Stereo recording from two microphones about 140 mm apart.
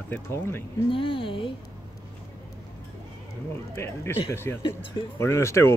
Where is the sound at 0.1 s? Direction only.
15° left (ahead or behind).